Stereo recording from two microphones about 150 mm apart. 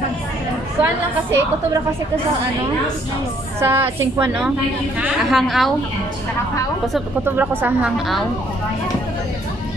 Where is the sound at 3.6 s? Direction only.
15° right (ahead or behind).